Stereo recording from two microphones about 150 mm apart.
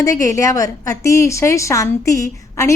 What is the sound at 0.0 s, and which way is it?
A woman's voice, 20° left (ahead or behind).